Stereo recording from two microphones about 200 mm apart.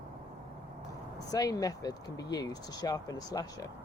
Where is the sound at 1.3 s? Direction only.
20° left (ahead or behind).